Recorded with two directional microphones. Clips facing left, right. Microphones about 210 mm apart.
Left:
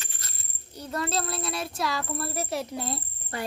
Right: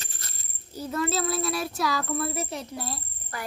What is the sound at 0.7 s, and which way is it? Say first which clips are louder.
A child's voice: right 2 dB; 5° right (ahead or behind).